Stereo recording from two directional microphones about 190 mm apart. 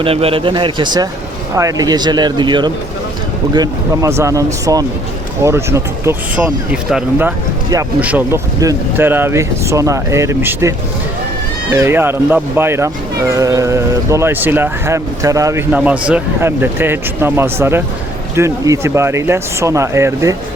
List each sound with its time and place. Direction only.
0.0 s speech: 30° right (ahead or behind)
11.8 s speech: 10° right (ahead or behind)